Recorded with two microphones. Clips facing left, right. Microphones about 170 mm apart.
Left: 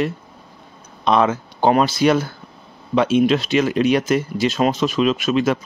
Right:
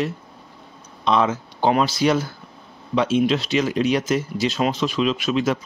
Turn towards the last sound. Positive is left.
turn(degrees=55)  # may be behind; listen again after turning